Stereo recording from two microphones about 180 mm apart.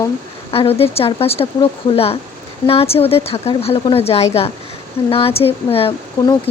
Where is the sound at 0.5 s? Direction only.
35° left (ahead or behind).